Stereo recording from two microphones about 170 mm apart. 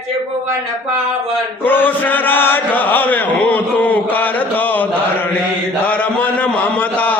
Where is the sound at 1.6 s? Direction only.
10° left (ahead or behind).